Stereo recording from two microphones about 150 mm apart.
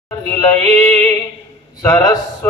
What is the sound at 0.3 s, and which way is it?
Mantra, 15° left (ahead or behind).